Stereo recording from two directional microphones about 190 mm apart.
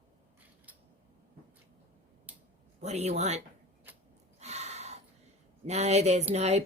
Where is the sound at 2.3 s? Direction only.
5° right (ahead or behind).